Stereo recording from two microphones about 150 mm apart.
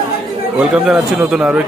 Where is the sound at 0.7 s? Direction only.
5° right (ahead or behind).